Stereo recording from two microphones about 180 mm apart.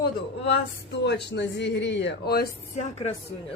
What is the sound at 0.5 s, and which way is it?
Speech, 70° left (ahead or behind).